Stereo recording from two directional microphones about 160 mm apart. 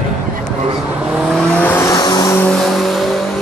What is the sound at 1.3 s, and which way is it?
Vehicle, 10° left (ahead or behind).